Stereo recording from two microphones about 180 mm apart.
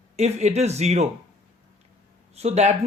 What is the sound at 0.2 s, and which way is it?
Speech, 40° right (ahead or behind).